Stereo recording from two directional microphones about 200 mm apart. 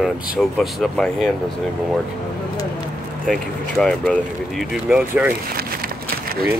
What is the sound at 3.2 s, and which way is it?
Speech, centre (ahead or behind).